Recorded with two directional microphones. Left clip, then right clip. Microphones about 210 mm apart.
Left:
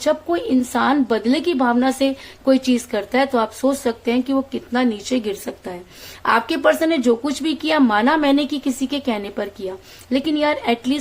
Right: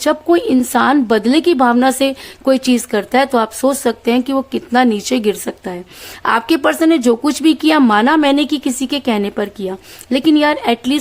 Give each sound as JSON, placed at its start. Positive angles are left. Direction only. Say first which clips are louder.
{"t": 0.0, "sound": "speech", "louder": "right 6 dB", "side_deg": -45}